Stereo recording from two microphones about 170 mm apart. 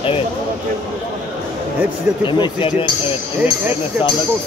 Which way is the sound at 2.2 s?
30° left (ahead or behind).